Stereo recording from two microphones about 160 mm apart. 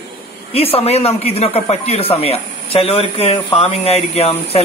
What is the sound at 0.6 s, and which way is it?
Speech, 40° left (ahead or behind).